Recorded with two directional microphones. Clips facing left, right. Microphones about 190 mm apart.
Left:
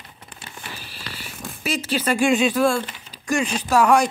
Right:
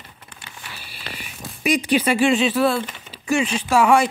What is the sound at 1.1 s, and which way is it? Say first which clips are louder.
Speech: even; 15° right (ahead or behind).